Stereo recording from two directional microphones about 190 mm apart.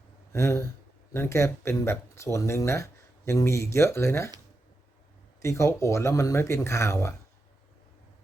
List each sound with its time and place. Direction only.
0.3 s speech: 15° left (ahead or behind)
5.4 s speech: 15° left (ahead or behind)